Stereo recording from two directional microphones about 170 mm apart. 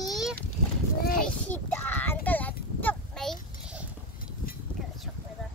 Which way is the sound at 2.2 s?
10° left (ahead or behind).